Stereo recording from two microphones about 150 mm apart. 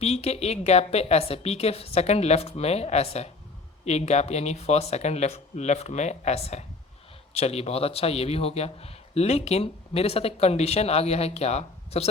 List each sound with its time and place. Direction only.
0.0 s a man's voice: 45° left (ahead or behind)